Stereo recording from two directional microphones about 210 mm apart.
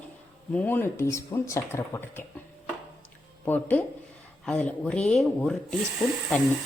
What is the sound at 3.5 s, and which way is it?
Speech, 10° left (ahead or behind).